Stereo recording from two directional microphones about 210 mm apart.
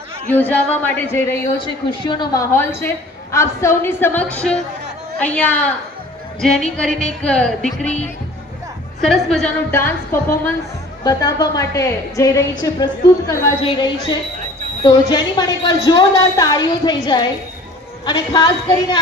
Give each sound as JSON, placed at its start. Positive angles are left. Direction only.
{"t": 0.3, "sound": "a woman's voice", "side_deg": 10}
{"t": 1.6, "sound": "a woman's voice", "side_deg": 25}
{"t": 2.5, "sound": "a woman's voice", "side_deg": 10}
{"t": 9.0, "sound": "a woman's voice", "side_deg": 0}